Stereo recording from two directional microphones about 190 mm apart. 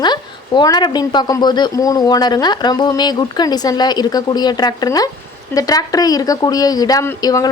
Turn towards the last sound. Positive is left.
turn(degrees=20)  # may be behind; listen again after turning